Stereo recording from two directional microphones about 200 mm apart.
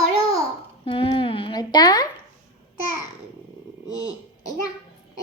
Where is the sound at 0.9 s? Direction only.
25° left (ahead or behind).